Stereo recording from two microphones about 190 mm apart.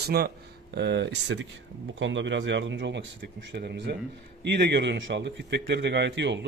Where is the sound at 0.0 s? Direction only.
55° right (ahead or behind).